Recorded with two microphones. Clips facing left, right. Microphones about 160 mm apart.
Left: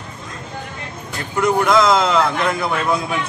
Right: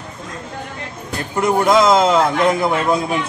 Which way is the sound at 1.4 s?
25° right (ahead or behind).